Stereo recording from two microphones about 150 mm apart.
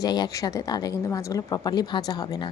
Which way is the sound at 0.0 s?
25° left (ahead or behind).